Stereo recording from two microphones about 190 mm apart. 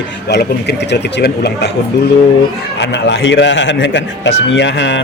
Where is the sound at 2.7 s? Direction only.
70° left (ahead or behind).